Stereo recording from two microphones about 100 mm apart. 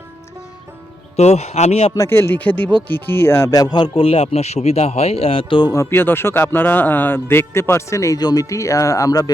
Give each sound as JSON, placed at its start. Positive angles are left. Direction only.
{"t": 1.1, "sound": "speech", "side_deg": 90}
{"t": 2.0, "sound": "a man's voice", "side_deg": 25}
{"t": 5.7, "sound": "a man's voice", "side_deg": 25}